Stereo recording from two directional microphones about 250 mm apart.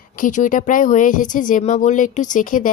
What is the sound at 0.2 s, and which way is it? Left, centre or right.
Speech, left.